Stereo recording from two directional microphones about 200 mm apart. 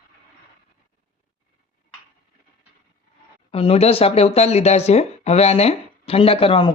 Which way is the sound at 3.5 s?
30° left (ahead or behind).